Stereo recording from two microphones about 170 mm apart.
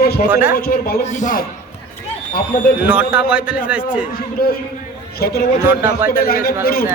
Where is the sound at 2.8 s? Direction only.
5° right (ahead or behind).